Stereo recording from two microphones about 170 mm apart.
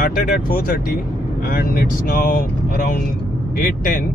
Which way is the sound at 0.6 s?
60° left (ahead or behind).